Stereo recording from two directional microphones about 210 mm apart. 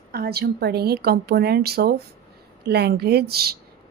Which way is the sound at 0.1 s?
50° right (ahead or behind).